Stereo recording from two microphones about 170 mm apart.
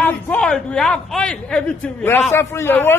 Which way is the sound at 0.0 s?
10° left (ahead or behind).